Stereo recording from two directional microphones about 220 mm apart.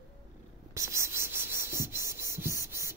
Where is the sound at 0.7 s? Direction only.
15° right (ahead or behind).